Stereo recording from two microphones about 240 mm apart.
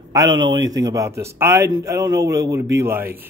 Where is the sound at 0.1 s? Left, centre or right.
Centre.